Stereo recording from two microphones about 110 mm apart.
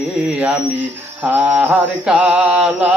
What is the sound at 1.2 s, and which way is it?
Mantra, 15° right (ahead or behind).